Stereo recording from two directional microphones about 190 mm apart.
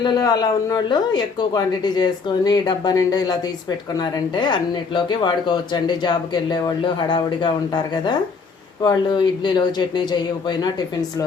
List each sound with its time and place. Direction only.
0.0 s speech: 20° left (ahead or behind)